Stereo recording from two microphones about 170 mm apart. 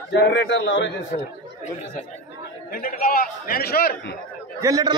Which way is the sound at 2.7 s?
60° left (ahead or behind).